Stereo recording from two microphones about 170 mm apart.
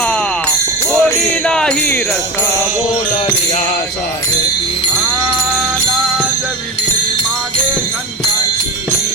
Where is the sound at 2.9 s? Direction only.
35° left (ahead or behind).